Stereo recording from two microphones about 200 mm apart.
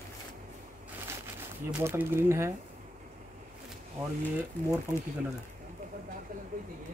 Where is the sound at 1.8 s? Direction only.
10° right (ahead or behind).